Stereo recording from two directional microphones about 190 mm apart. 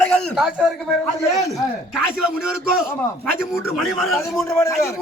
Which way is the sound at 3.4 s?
Centre (ahead or behind).